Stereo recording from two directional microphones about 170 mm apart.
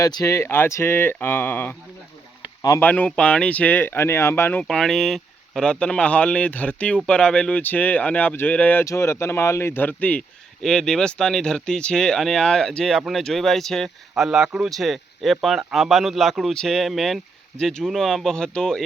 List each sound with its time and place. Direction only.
0.0 s speech: 20° left (ahead or behind)
2.4 s a sound: 20° left (ahead or behind)
2.9 s speech: 5° left (ahead or behind)